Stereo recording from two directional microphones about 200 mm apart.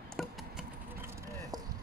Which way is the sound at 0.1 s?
Centre (ahead or behind).